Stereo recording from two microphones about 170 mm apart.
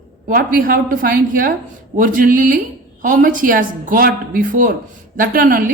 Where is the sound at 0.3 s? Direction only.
55° right (ahead or behind).